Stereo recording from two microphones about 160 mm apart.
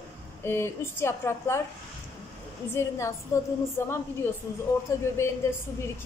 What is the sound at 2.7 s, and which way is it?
A woman's voice, 20° left (ahead or behind).